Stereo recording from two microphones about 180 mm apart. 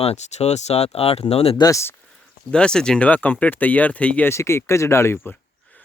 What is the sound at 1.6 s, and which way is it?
Speech, 15° left (ahead or behind).